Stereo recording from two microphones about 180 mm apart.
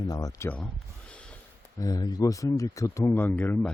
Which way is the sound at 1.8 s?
20° left (ahead or behind).